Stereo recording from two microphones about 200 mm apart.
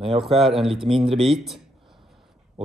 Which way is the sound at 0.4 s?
Centre (ahead or behind).